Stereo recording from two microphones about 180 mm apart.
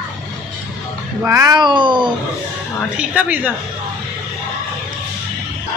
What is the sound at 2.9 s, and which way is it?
Speech, 5° right (ahead or behind).